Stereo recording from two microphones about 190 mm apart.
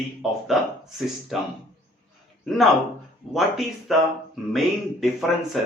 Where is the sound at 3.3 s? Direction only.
Centre (ahead or behind).